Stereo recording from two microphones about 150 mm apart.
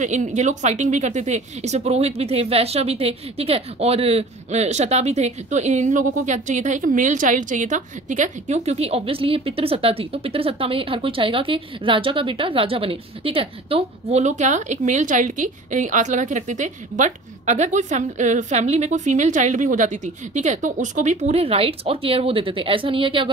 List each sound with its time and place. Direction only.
0.0 s speech: 55° right (ahead or behind); by 23.3 s 35° right (ahead or behind)